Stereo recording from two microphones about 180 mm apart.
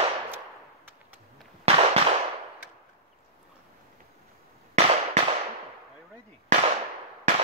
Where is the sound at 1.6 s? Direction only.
35° right (ahead or behind).